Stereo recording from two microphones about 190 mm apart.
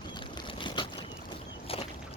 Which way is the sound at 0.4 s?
25° left (ahead or behind).